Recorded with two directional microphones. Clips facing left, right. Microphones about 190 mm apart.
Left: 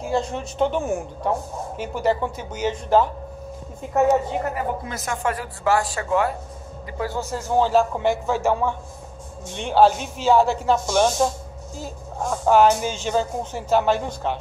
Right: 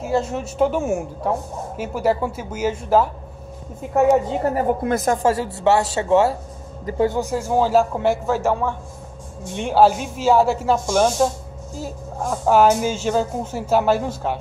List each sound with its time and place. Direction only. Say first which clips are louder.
0.0 s a woman's voice: right 2 dB; 5° right (ahead or behind)
4.4 s a woman's voice: right 5 dB; 35° right (ahead or behind)
4.8 s speech: right 10 dB; 50° right (ahead or behind)
5.2 s a man's voice: right 6 dB; 25° right (ahead or behind); by 14.4 s 5° right (ahead or behind)